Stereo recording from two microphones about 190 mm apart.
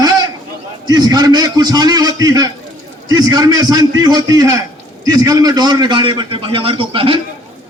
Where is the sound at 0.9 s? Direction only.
20° right (ahead or behind).